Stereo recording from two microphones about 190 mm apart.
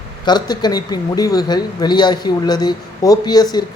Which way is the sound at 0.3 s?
20° left (ahead or behind).